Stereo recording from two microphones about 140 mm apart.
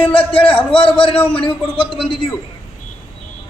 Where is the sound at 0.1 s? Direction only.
40° left (ahead or behind).